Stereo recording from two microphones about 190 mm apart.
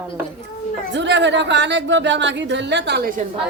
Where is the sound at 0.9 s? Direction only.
70° right (ahead or behind); by 3.2 s 55° right (ahead or behind).